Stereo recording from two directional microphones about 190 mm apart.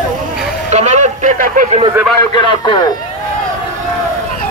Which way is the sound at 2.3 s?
25° left (ahead or behind).